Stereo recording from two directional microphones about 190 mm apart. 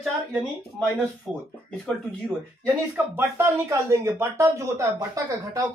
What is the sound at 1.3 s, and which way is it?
A man's voice, 5° left (ahead or behind).